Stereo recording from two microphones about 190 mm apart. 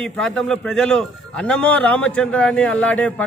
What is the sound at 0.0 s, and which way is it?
A man's voice, 5° left (ahead or behind).